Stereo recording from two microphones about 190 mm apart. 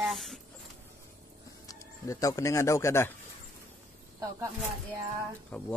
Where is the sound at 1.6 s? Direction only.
20° left (ahead or behind).